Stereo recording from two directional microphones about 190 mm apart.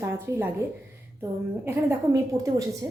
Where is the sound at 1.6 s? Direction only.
15° right (ahead or behind).